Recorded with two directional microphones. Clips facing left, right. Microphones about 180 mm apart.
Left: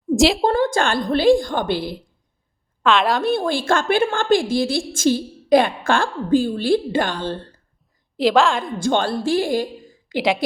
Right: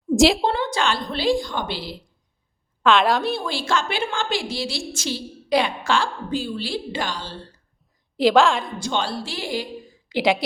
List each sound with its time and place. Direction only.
0.1 s a woman's voice: centre (ahead or behind)
0.4 s a woman's voice: 45° left (ahead or behind)
2.8 s a woman's voice: centre (ahead or behind)
3.2 s a woman's voice: 50° left (ahead or behind)
8.1 s a woman's voice: centre (ahead or behind)
8.8 s a woman's voice: 50° left (ahead or behind)
10.2 s a woman's voice: centre (ahead or behind)